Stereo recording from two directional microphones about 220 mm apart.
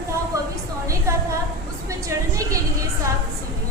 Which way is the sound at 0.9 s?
15° right (ahead or behind).